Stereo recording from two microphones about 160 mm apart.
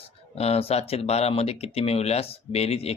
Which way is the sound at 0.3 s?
40° left (ahead or behind).